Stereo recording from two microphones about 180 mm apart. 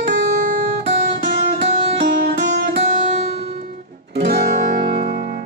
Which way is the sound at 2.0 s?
65° right (ahead or behind).